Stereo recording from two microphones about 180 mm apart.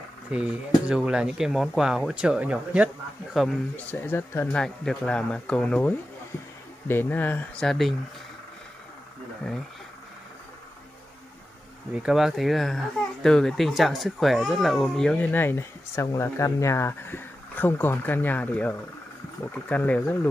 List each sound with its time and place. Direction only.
0.3 s speech: 5° right (ahead or behind)
3.3 s speech: 5° left (ahead or behind)
11.9 s speech: 5° right (ahead or behind)